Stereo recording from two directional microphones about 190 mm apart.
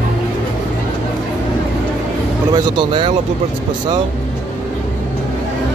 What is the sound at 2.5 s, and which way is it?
Speech, 20° right (ahead or behind).